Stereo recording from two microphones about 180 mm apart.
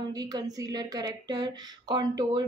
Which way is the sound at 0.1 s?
20° right (ahead or behind).